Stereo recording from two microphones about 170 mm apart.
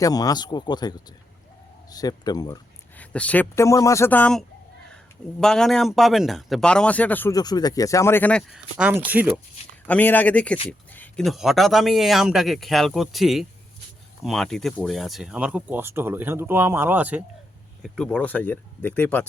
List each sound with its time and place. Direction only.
0.0 s speech: 20° left (ahead or behind)
3.0 s speech: 10° left (ahead or behind)
7.3 s speech: 25° left (ahead or behind); by 9.3 s 10° right (ahead or behind)
9.8 s speech: 10° left (ahead or behind); by 17.2 s 10° right (ahead or behind)
17.8 s speech: 5° left (ahead or behind)